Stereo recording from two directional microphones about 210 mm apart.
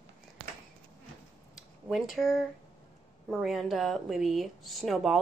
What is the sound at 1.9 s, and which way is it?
Speech, centre (ahead or behind).